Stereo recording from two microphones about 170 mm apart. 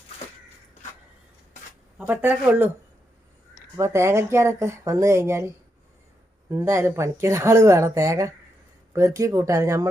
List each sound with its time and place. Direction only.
2.0 s speech: 10° right (ahead or behind)
3.8 s speech: 15° right (ahead or behind)
6.5 s speech: 15° right (ahead or behind)